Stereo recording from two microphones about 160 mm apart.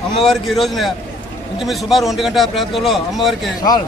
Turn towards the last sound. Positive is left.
turn(degrees=0)  # may be behind; listen again after turning